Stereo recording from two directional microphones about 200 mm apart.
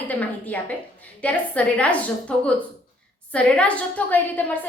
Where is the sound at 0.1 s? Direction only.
10° left (ahead or behind).